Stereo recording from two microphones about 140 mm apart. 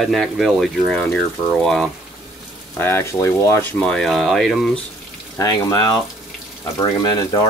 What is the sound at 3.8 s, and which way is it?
Speech, 5° left (ahead or behind).